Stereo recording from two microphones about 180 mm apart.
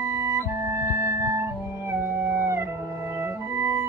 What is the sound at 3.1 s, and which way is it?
Music, 15° right (ahead or behind).